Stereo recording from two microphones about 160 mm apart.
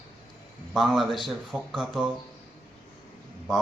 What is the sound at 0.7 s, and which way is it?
Speech, centre (ahead or behind).